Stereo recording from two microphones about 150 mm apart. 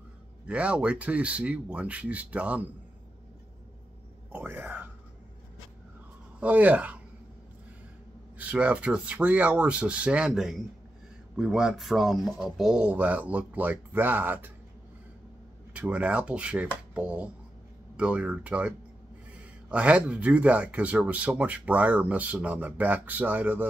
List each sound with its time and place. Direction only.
0.5 s a man's voice: 10° right (ahead or behind)
4.3 s speech: 15° right (ahead or behind)
6.4 s a man's voice: 10° right (ahead or behind)
8.4 s a man's voice: 10° right (ahead or behind)
15.7 s a man's voice: 10° right (ahead or behind)